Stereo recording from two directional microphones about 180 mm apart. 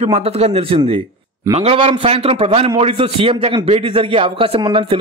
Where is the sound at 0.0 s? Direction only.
35° right (ahead or behind).